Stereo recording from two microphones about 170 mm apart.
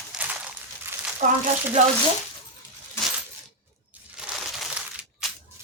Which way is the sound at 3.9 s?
5° right (ahead or behind).